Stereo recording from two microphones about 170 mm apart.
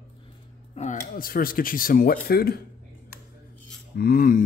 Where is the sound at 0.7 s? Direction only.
45° left (ahead or behind).